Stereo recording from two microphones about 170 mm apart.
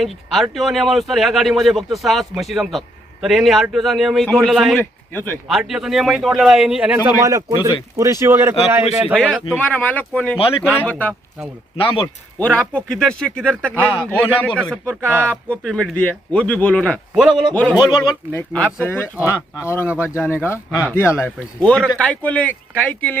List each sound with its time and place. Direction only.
0.0 s speech: centre (ahead or behind)
4.8 s speech: 10° left (ahead or behind)
5.5 s speech: centre (ahead or behind)
9.6 s a man's voice: 10° left (ahead or behind)
11.8 s speech: 30° left (ahead or behind)
12.4 s a man's voice: 5° left (ahead or behind)
17.2 s speech: 5° right (ahead or behind)
17.5 s a man's voice: 10° left (ahead or behind)
19.9 s speech: 10° right (ahead or behind)
20.1 s a man's voice: 15° left (ahead or behind)